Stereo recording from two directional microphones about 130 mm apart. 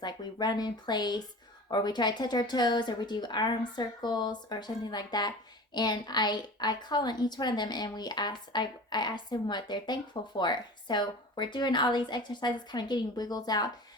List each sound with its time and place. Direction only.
0.0 s a woman's voice: 35° left (ahead or behind)